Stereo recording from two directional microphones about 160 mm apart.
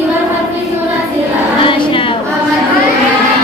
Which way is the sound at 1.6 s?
30° left (ahead or behind).